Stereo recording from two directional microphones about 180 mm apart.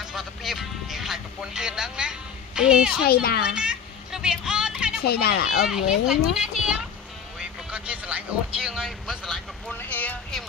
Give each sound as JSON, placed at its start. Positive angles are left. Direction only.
{"t": 0.0, "sound": "music", "side_deg": 0}
{"t": 3.0, "sound": "a child's voice", "side_deg": 60}
{"t": 3.5, "sound": "a sound", "side_deg": -5}
{"t": 5.0, "sound": "a child's voice", "side_deg": 60}
{"t": 5.7, "sound": "a child's voice", "side_deg": -5}
{"t": 7.3, "sound": "music", "side_deg": -5}
{"t": 8.5, "sound": "a sound", "side_deg": 0}